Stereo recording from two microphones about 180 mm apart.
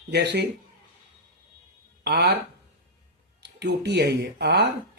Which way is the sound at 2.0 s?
65° right (ahead or behind).